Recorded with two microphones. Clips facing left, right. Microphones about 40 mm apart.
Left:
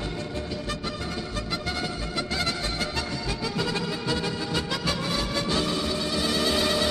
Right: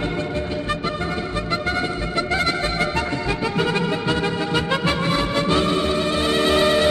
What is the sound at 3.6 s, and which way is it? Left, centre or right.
Music, right.